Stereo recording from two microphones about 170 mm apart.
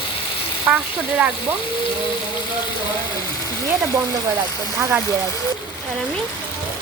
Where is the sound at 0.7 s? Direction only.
10° right (ahead or behind).